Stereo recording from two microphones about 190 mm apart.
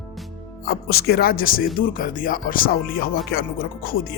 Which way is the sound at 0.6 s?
55° left (ahead or behind).